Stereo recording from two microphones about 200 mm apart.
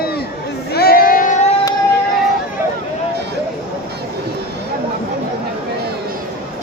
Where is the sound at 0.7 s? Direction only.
50° left (ahead or behind).